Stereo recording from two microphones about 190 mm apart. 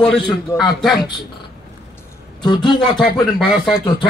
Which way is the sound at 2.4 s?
25° left (ahead or behind).